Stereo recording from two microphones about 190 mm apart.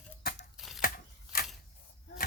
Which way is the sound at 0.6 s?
Centre (ahead or behind).